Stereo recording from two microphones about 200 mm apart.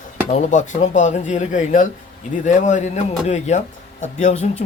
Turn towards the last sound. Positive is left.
turn(degrees=35)  # may be behind; listen again after turning